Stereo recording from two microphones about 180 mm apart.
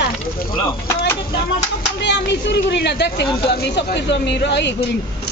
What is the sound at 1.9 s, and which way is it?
Speech, 70° left (ahead or behind).